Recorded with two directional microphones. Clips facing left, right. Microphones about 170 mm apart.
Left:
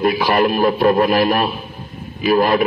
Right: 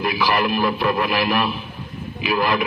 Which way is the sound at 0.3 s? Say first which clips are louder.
Left 4 dB; 45° left (ahead or behind).